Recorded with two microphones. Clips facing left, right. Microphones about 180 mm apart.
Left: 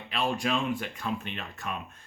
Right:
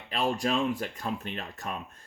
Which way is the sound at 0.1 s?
40° right (ahead or behind).